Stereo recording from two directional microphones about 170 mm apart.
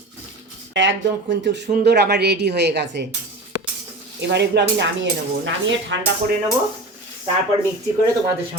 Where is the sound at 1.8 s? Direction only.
80° right.